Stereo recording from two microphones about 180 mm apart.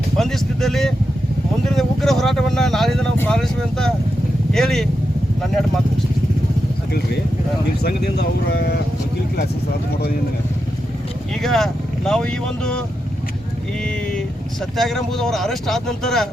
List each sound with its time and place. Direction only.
0.2 s speech: centre (ahead or behind)
7.9 s speech: 65° left (ahead or behind)
11.4 s speech: centre (ahead or behind)
14.8 s speech: centre (ahead or behind)